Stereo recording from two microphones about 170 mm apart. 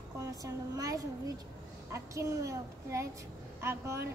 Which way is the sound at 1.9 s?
15° right (ahead or behind).